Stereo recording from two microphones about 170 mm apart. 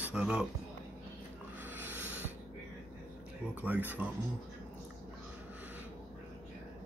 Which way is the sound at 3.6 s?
10° right (ahead or behind).